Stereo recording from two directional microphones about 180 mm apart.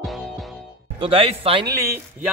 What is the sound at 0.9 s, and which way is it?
Speech, 30° right (ahead or behind).